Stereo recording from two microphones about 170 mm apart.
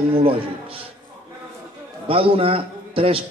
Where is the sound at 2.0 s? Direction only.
35° right (ahead or behind).